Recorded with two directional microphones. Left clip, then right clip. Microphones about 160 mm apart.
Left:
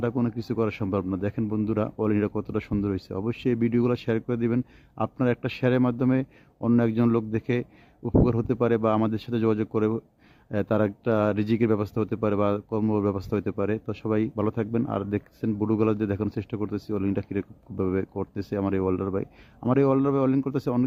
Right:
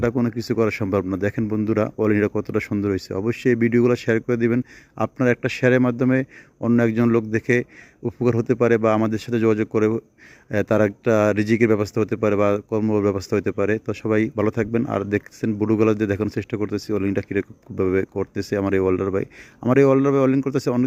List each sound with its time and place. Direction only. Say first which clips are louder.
0.0 s a man's voice: right 6 dB; 20° right (ahead or behind)